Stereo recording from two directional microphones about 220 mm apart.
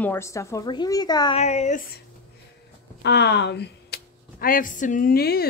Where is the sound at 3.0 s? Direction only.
50° left (ahead or behind).